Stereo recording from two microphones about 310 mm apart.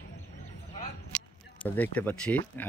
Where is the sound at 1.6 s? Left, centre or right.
Centre.